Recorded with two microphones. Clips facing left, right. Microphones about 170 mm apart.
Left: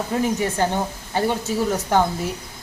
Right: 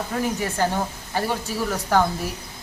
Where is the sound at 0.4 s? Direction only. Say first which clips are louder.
Left 2 dB; 20° left (ahead or behind).